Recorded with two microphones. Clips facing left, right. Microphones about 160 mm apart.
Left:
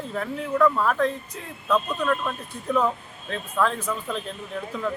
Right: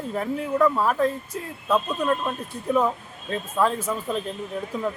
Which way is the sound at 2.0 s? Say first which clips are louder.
Right 1 dB; 30° right (ahead or behind).